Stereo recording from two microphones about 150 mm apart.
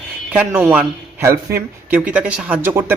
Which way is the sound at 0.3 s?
10° right (ahead or behind).